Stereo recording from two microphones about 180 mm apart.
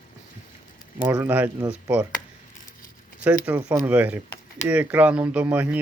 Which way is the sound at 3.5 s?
20° right (ahead or behind).